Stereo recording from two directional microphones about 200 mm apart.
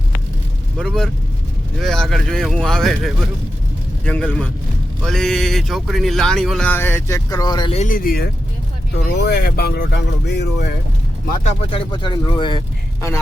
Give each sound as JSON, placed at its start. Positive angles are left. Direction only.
{"t": 0.8, "sound": "speech", "side_deg": 0}
{"t": 7.8, "sound": "speech", "side_deg": 45}
{"t": 11.4, "sound": "speech", "side_deg": 25}